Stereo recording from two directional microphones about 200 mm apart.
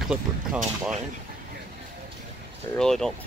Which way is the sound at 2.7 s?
Centre (ahead or behind).